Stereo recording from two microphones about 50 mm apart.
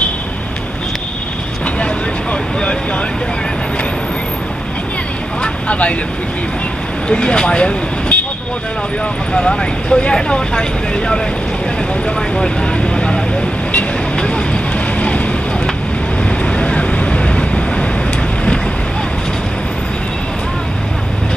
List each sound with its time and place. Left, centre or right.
5.4 s vehicle: left
7.1 s speech: centre
9.3 s speech: centre
12.4 s vehicle: centre
16.3 s vehicle: left